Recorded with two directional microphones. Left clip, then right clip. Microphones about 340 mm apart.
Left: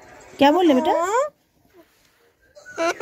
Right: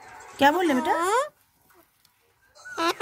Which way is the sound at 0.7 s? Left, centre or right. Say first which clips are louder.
Left 6 dB; centre.